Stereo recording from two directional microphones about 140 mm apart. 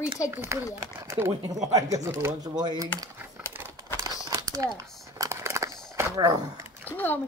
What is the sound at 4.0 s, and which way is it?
Crumpling, 25° right (ahead or behind).